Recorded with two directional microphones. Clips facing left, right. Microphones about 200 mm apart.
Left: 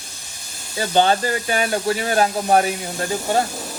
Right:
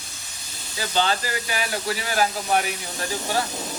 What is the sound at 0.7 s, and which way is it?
Speech, 55° left (ahead or behind).